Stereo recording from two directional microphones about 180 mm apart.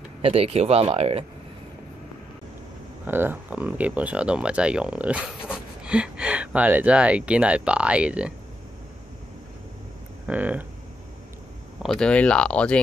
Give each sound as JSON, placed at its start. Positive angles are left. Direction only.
{"t": 0.2, "sound": "speech", "side_deg": -35}
{"t": 3.1, "sound": "speech", "side_deg": -10}
{"t": 10.2, "sound": "speech", "side_deg": -10}
{"t": 11.8, "sound": "speech", "side_deg": 5}